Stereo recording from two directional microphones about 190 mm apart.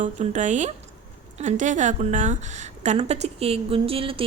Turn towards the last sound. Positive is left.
turn(degrees=-30)  # may be behind; listen again after turning